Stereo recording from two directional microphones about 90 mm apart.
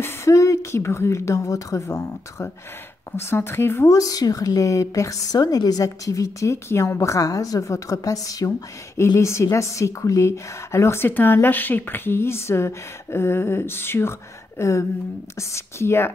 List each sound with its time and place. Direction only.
0.0 s a woman's voice: 35° left (ahead or behind)